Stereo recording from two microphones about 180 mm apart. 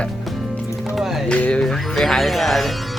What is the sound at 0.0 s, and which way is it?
Music, 5° left (ahead or behind).